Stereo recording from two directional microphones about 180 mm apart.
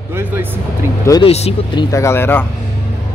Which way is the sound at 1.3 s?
35° left (ahead or behind).